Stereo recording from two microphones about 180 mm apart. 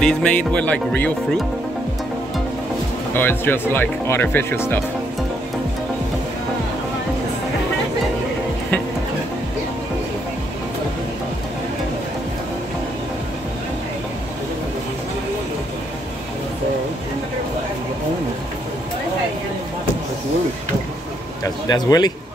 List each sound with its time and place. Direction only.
0.0 s speech: 5° left (ahead or behind)
3.2 s speech: 10° left (ahead or behind)
21.6 s a man's voice: 20° left (ahead or behind)